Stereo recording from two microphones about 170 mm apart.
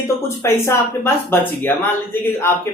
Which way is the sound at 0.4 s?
15° left (ahead or behind).